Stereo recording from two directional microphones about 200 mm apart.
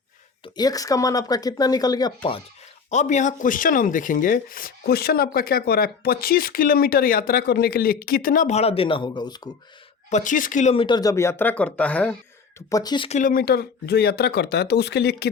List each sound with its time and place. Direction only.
0.4 s speech: 20° left (ahead or behind)
2.9 s speech: 35° left (ahead or behind); by 9.5 s 20° left (ahead or behind)
10.1 s speech: 40° left (ahead or behind); by 12.1 s 5° left (ahead or behind)
12.5 s speech: 20° left (ahead or behind)
13.1 s speech: 40° left (ahead or behind); by 15.3 s 55° left (ahead or behind)